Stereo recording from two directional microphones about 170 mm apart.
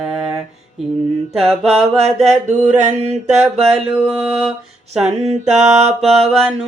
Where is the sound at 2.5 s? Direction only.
45° right (ahead or behind).